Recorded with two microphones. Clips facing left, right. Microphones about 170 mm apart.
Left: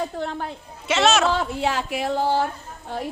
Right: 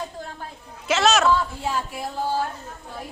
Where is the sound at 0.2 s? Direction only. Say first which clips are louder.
Left 8 dB; 75° left (ahead or behind).